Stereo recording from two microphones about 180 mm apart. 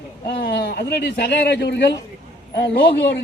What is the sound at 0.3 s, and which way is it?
A man's voice, 65° left (ahead or behind).